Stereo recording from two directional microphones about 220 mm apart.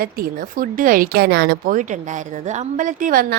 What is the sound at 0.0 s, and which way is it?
Speech, 40° right (ahead or behind).